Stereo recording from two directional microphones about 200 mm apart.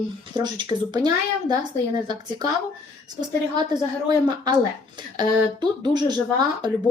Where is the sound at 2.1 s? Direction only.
20° right (ahead or behind).